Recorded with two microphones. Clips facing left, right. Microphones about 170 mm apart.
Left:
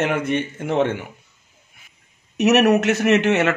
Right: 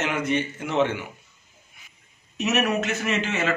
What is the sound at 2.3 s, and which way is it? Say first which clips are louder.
A man's voice: left 9 dB; 70° left (ahead or behind).